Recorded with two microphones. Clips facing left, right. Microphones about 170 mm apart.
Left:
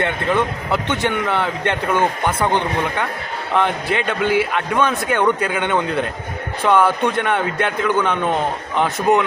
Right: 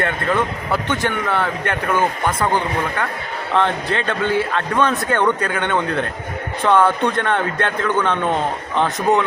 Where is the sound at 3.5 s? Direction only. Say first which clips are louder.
Even; 10° left (ahead or behind).